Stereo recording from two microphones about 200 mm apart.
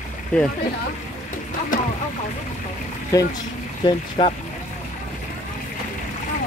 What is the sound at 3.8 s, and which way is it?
Speech, 30° left (ahead or behind).